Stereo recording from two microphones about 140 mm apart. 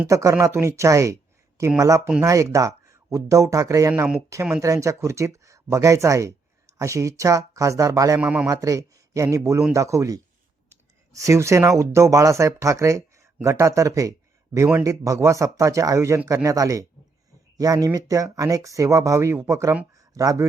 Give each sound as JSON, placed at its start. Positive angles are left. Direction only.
{"t": 0.1, "sound": "speech", "side_deg": -20}
{"t": 8.2, "sound": "a man's voice", "side_deg": -10}
{"t": 8.4, "sound": "speech", "side_deg": -25}